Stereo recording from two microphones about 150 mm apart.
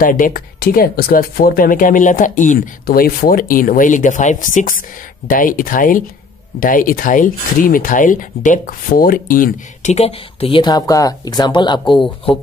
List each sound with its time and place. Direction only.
0.0 s speech: 65° left (ahead or behind)
9.9 s speech: 40° left (ahead or behind)